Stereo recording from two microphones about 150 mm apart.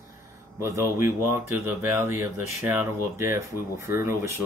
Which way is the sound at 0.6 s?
20° right (ahead or behind).